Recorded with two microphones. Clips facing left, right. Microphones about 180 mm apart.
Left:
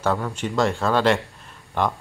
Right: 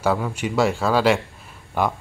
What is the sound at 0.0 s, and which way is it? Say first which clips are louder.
Speech: right 2 dB; 5° right (ahead or behind).